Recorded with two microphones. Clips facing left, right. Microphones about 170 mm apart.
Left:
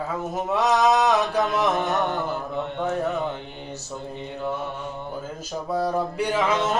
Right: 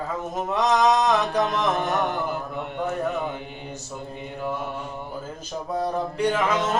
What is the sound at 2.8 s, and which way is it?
Carnatic music, 10° right (ahead or behind).